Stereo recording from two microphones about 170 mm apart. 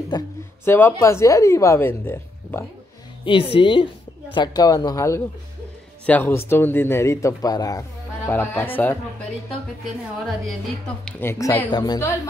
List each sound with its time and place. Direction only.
0.1 s a woman's voice: 25° left (ahead or behind)
0.7 s speech: 15° left (ahead or behind)
3.3 s a woman's voice: 30° left (ahead or behind); by 8.9 s 10° left (ahead or behind)
11.1 s a woman's voice: 15° left (ahead or behind)